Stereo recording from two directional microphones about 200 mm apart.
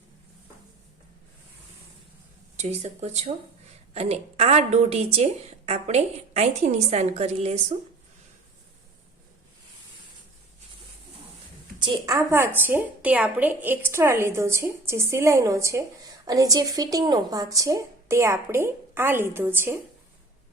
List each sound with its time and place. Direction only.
2.6 s a woman's voice: 35° right (ahead or behind)
11.8 s a woman's voice: 20° right (ahead or behind)